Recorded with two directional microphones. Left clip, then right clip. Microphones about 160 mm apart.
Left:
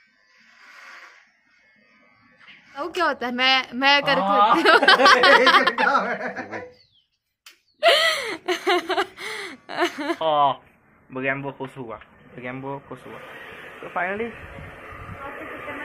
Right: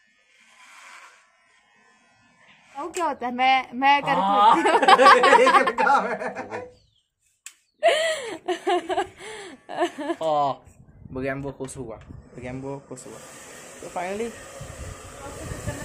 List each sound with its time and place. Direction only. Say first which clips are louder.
2.9 s a woman's voice: left 3 dB; 10° right (ahead or behind)
7.8 s gasp: left 3 dB; 5° right (ahead or behind)
8.5 s a sound: left 2 dB; 10° right (ahead or behind)
11.1 s speech: left 4 dB; 20° right (ahead or behind)
11.4 s speech: left 1 dB; centre (ahead or behind)
11.9 s speech: left 3 dB; 15° right (ahead or behind)
13.9 s speech: left 3 dB; 20° right (ahead or behind)